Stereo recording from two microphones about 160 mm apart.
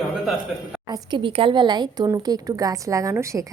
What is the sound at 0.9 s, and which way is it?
A woman's voice, 25° right (ahead or behind).